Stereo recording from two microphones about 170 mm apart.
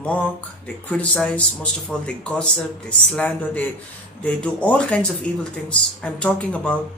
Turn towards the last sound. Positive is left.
turn(degrees=10)  # may be behind; listen again after turning